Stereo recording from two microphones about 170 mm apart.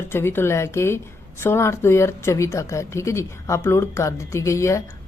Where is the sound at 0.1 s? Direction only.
15° left (ahead or behind).